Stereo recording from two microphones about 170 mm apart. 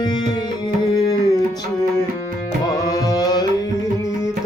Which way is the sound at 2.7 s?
20° left (ahead or behind).